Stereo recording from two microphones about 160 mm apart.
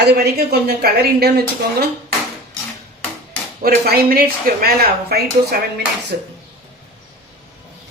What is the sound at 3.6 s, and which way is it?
Speech, 70° right (ahead or behind).